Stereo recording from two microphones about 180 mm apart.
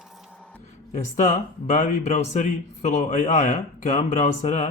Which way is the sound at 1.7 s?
45° left (ahead or behind).